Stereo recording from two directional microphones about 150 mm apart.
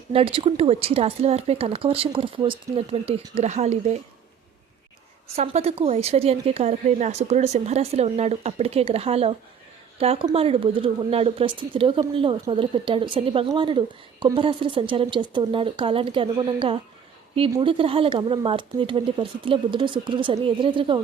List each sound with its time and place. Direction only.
0.1 s a woman's voice: 35° right (ahead or behind)
5.4 s a woman's voice: 45° right (ahead or behind)